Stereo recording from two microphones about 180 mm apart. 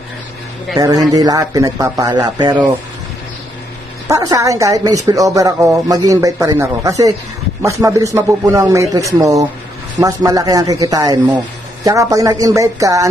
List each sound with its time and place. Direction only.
0.7 s speech: 20° right (ahead or behind)
4.1 s a man's voice: 20° right (ahead or behind)